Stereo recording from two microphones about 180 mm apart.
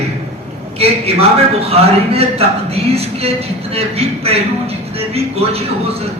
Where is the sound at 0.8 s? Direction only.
35° right (ahead or behind).